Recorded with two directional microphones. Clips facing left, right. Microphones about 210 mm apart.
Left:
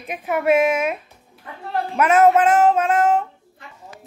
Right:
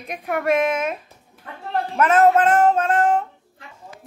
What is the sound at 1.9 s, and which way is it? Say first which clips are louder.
Music: left 1 dB; 10° left (ahead or behind).